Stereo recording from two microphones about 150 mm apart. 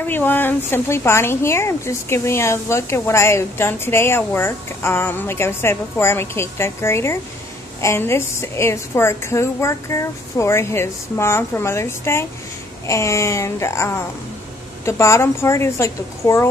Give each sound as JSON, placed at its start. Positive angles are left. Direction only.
{"t": 0.0, "sound": "a woman's voice", "side_deg": 10}